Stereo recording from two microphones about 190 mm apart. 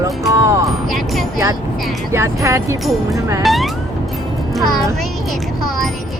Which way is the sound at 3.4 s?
Centre (ahead or behind).